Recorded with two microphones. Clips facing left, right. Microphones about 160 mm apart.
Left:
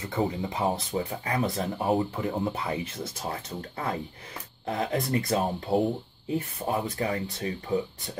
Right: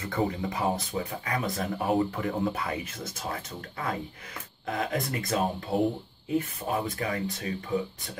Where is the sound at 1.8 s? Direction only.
20° left (ahead or behind).